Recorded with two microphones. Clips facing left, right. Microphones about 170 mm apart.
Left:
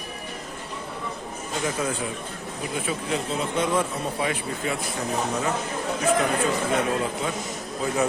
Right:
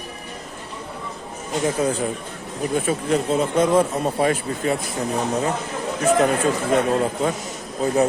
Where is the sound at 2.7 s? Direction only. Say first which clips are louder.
Right 7 dB; 45° right (ahead or behind).